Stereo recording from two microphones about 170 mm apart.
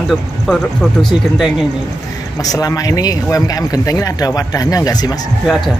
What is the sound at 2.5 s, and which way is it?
Speech, 20° left (ahead or behind).